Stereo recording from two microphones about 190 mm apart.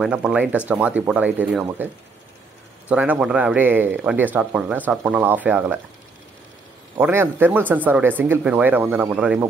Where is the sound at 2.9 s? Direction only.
5° right (ahead or behind).